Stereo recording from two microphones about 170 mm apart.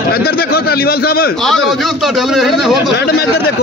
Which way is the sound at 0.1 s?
65° left (ahead or behind).